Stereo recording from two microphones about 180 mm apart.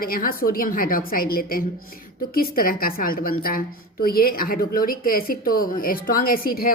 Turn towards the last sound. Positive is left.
turn(degrees=55)  # may be behind; listen again after turning